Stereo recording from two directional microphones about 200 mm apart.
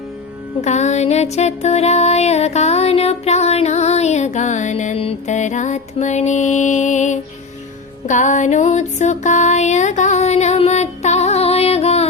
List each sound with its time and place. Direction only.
0.6 s music: 35° left (ahead or behind)